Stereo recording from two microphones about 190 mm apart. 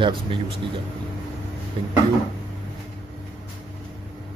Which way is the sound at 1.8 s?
25° right (ahead or behind).